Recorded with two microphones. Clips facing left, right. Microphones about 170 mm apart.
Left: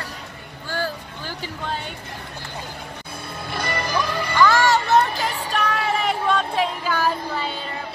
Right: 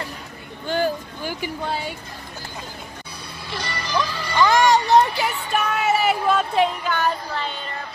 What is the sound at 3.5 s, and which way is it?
Music, 55° left (ahead or behind).